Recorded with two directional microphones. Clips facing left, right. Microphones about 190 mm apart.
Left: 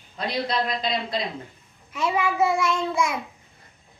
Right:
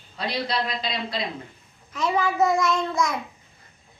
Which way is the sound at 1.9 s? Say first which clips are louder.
Even; 10° left (ahead or behind).